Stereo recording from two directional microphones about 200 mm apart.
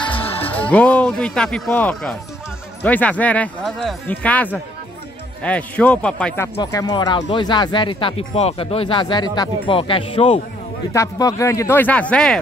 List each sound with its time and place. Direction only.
0.0 s music: 25° left (ahead or behind)
0.7 s speech: 5° left (ahead or behind)
6.5 s speech: 20° left (ahead or behind)
10.9 s speech: 15° left (ahead or behind)